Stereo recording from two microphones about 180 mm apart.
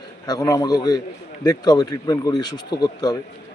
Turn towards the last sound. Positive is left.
turn(degrees=20)  # may be behind; listen again after turning